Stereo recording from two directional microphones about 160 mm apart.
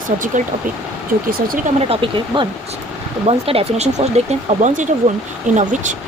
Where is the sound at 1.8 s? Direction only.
35° right (ahead or behind).